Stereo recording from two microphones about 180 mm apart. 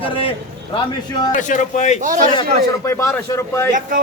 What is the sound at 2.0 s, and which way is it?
Speech, 45° right (ahead or behind).